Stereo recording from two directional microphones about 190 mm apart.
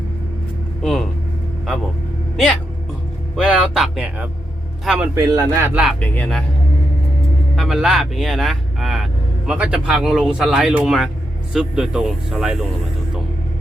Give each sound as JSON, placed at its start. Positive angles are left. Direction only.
{"t": 0.8, "sound": "a sound", "side_deg": 0}
{"t": 2.3, "sound": "speech", "side_deg": 0}
{"t": 3.3, "sound": "a sound", "side_deg": 0}
{"t": 4.9, "sound": "speech", "side_deg": -10}
{"t": 5.7, "sound": "speech", "side_deg": 0}
{"t": 7.5, "sound": "speech", "side_deg": 0}